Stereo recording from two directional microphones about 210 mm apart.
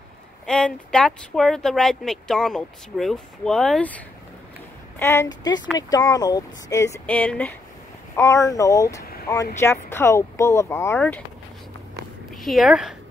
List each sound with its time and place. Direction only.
0.5 s speech: 5° left (ahead or behind)
9.0 s vehicle: 45° left (ahead or behind)
9.6 s speech: 10° left (ahead or behind)
12.4 s speech: centre (ahead or behind)